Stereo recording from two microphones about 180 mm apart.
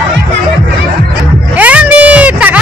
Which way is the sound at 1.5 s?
10° right (ahead or behind).